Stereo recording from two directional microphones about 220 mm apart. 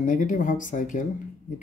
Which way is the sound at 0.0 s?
35° left (ahead or behind).